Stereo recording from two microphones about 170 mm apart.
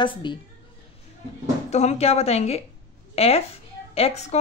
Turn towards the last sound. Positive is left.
turn(degrees=40)  # may be behind; listen again after turning